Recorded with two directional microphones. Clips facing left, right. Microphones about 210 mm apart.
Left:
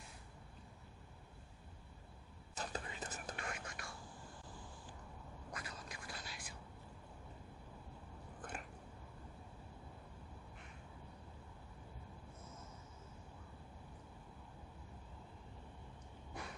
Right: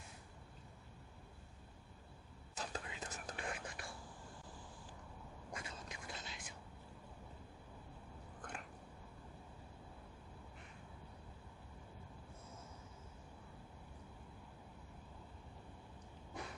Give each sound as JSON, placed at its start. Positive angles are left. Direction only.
{"t": 2.5, "sound": "whispering", "side_deg": 0}
{"t": 3.3, "sound": "whispering", "side_deg": -30}
{"t": 5.5, "sound": "whispering", "side_deg": -25}
{"t": 8.4, "sound": "a sound", "side_deg": 5}